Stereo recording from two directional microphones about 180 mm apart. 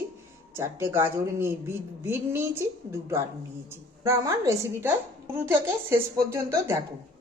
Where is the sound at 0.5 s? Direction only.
15° right (ahead or behind).